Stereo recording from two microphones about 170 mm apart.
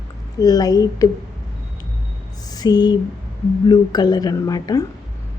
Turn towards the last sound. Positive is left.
turn(degrees=20)  # may be behind; listen again after turning